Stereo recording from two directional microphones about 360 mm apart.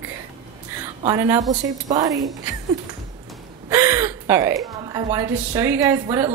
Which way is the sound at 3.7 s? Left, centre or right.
Centre.